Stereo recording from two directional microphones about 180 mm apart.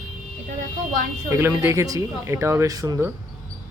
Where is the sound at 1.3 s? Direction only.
15° right (ahead or behind).